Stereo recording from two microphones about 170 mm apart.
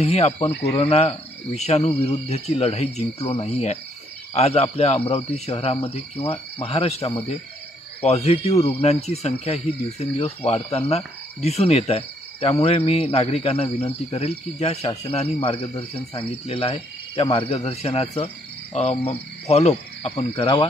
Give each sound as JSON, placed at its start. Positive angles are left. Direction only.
{"t": 0.0, "sound": "speech", "side_deg": 40}